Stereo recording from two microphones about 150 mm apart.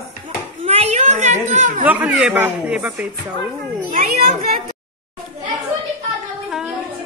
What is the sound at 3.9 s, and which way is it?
Speech, 70° right (ahead or behind).